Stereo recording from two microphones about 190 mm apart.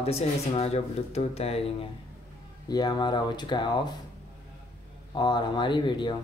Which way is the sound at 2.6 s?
20° left (ahead or behind).